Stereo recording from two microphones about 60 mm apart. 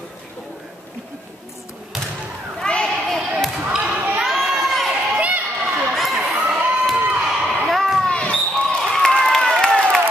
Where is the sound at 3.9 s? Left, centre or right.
Right.